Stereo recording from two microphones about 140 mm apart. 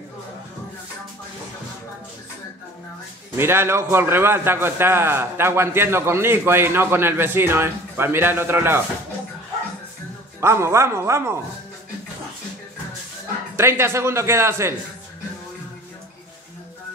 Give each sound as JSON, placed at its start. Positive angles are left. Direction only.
{"t": 3.3, "sound": "a man's voice", "side_deg": -15}
{"t": 10.4, "sound": "speech", "side_deg": -20}
{"t": 13.6, "sound": "speech", "side_deg": -20}